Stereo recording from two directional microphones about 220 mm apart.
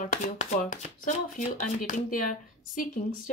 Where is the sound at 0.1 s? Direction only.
35° left (ahead or behind).